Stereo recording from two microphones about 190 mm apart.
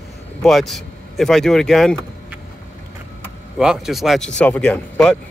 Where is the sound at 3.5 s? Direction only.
5° right (ahead or behind).